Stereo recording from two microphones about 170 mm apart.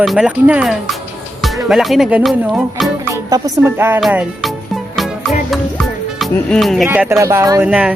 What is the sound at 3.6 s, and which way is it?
Speech, 15° right (ahead or behind).